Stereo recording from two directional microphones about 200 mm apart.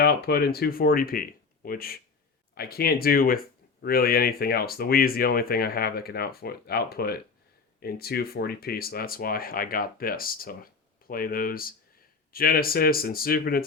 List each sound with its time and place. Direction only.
0.0 s speech: 50° left (ahead or behind)